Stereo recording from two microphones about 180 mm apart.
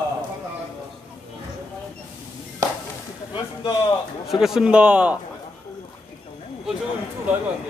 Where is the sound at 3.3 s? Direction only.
25° left (ahead or behind).